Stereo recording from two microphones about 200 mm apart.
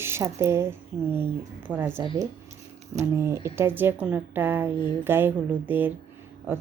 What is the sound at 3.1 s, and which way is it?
A woman's voice, 15° right (ahead or behind).